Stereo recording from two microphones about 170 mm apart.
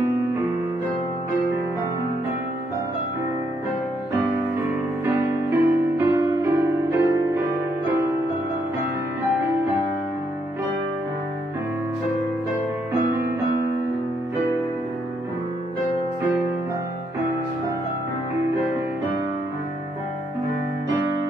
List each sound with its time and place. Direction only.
5.0 s music: 15° right (ahead or behind)